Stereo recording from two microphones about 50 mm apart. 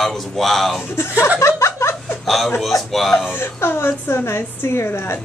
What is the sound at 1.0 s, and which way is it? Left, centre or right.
Speech, left.